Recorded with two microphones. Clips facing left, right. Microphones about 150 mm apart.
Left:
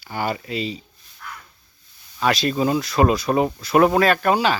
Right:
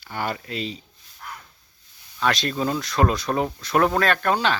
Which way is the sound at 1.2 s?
35° right (ahead or behind).